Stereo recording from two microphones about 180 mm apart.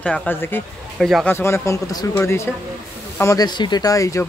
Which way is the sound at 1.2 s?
15° left (ahead or behind).